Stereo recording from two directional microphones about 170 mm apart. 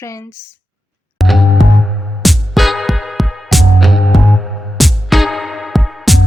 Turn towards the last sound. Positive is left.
turn(degrees=0)  # may be behind; listen again after turning